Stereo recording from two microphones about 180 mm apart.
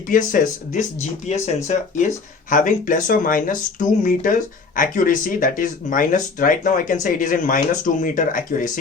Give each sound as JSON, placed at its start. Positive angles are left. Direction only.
{"t": 0.1, "sound": "speech", "side_deg": 50}